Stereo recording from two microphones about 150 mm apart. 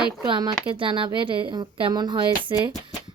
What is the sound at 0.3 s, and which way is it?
A woman's voice, 25° right (ahead or behind).